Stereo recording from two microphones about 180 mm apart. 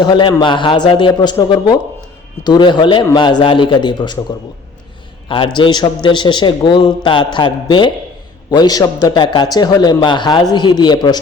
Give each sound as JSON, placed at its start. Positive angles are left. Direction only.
{"t": 0.0, "sound": "a man's voice", "side_deg": 25}
{"t": 5.3, "sound": "a man's voice", "side_deg": 25}